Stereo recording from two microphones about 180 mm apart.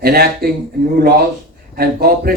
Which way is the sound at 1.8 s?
60° right (ahead or behind).